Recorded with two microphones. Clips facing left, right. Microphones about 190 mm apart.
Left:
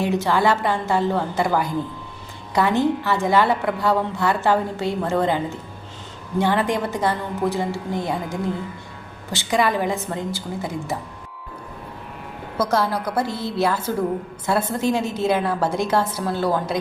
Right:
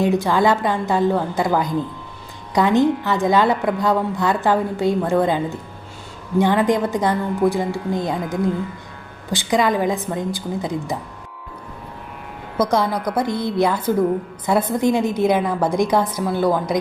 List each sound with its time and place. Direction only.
0.0 s a woman's voice: 15° right (ahead or behind)
9.3 s a woman's voice: 15° right (ahead or behind)
12.6 s a woman's voice: 15° right (ahead or behind)